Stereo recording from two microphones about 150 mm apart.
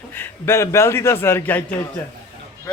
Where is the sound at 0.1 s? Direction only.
15° left (ahead or behind).